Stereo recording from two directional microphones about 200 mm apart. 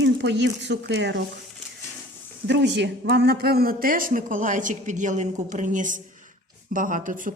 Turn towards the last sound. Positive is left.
turn(degrees=-40)  # may be behind; listen again after turning